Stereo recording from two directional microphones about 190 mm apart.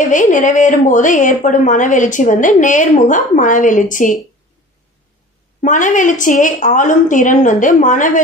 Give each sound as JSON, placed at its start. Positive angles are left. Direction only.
{"t": 0.1, "sound": "a woman's voice", "side_deg": 40}
{"t": 5.6, "sound": "a woman's voice", "side_deg": 40}